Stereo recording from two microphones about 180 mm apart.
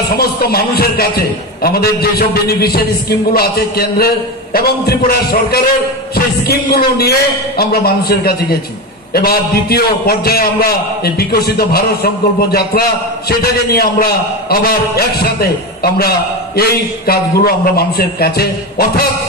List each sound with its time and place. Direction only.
0.2 s a man's voice: 60° left (ahead or behind)